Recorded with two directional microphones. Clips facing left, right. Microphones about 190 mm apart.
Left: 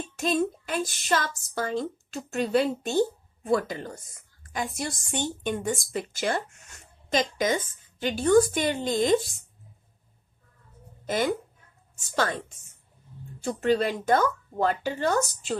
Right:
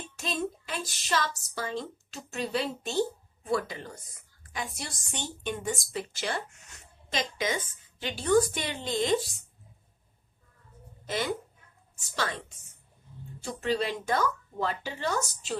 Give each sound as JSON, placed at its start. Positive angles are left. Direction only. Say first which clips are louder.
{"t": 0.1, "sound": "a woman's voice", "louder": "left 7 dB", "side_deg": 50}
{"t": 13.4, "sound": "a woman's voice", "louder": "left 6 dB", "side_deg": 50}